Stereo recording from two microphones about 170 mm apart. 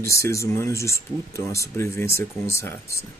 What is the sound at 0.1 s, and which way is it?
Speech, 15° left (ahead or behind).